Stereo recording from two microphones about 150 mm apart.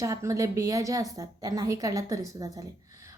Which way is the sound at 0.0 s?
20° right (ahead or behind).